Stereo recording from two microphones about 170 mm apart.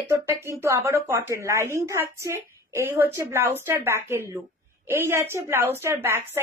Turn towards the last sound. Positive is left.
turn(degrees=-15)  # may be behind; listen again after turning